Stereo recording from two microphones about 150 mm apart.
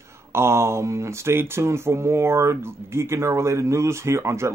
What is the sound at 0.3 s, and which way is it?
Speech, 15° right (ahead or behind).